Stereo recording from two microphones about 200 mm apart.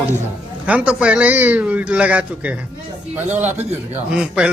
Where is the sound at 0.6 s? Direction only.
5° right (ahead or behind).